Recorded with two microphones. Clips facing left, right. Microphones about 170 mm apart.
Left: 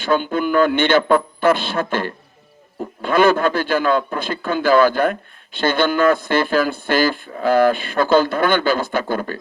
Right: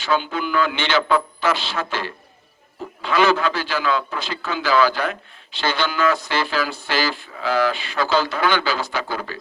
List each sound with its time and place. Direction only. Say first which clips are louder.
0.0 s speech: left 4 dB; 50° left (ahead or behind)